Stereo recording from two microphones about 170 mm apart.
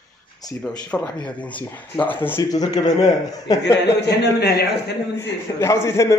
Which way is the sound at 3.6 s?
90° left.